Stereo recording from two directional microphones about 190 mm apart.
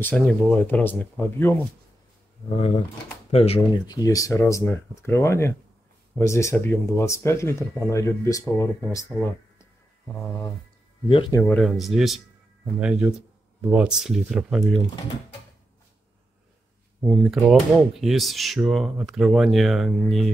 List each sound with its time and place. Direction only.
0.0 s speech: 5° left (ahead or behind)
2.5 s speech: 35° left (ahead or behind); by 10.5 s 10° left (ahead or behind)
11.1 s speech: 25° left (ahead or behind)
11.4 s speech: 5° left (ahead or behind)
13.6 s speech: 5° right (ahead or behind)
17.0 s speech: centre (ahead or behind)